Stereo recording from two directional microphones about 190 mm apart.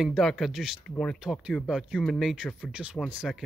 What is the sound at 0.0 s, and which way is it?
Speech, centre (ahead or behind).